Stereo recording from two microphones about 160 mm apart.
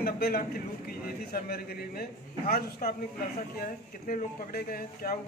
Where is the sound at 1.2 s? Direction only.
75° left (ahead or behind).